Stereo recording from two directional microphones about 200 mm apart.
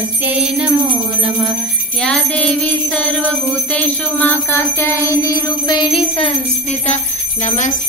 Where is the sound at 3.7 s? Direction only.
5° left (ahead or behind); by 6.3 s 25° left (ahead or behind).